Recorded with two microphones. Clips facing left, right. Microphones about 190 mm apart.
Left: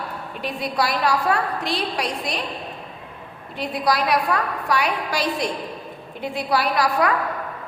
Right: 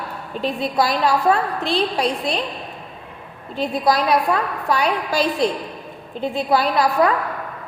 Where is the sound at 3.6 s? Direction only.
30° right (ahead or behind).